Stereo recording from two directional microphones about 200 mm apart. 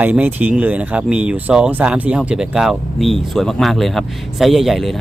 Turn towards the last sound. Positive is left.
turn(degrees=0)  # may be behind; listen again after turning